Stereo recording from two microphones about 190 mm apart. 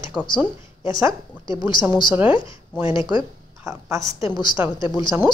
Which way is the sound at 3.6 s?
15° right (ahead or behind).